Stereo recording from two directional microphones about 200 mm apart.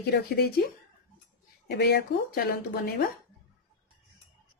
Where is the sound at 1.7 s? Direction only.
55° left (ahead or behind).